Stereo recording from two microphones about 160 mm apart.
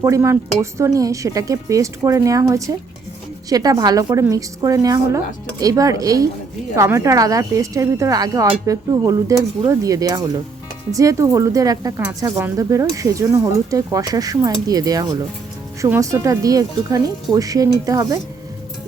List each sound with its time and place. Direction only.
0.0 s speech: 20° right (ahead or behind)